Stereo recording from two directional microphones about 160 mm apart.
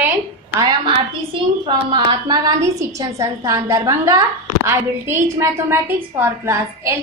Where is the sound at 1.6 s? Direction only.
30° right (ahead or behind).